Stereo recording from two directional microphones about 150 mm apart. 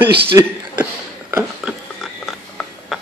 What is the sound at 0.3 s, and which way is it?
Speech, 20° right (ahead or behind).